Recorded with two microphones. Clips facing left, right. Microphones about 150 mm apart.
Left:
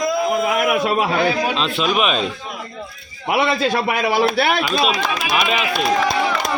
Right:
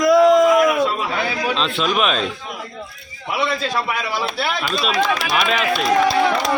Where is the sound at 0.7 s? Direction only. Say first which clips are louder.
Left 1 dB; 70° left (ahead or behind).